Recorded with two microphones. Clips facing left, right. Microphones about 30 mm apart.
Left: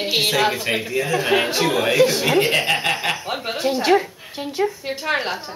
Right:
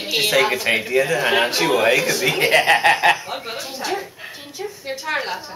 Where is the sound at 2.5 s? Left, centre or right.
Right.